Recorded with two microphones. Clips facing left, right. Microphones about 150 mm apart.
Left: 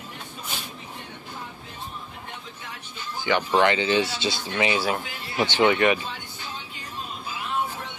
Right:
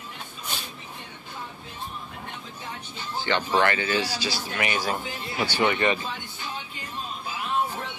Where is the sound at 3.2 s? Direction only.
15° left (ahead or behind).